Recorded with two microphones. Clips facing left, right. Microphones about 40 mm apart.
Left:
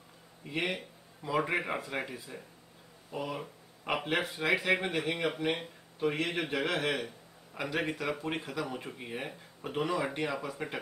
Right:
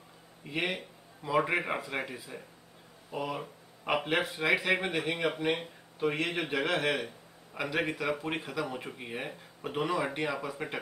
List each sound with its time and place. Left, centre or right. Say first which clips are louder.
0.4 s speech: right 1 dB; centre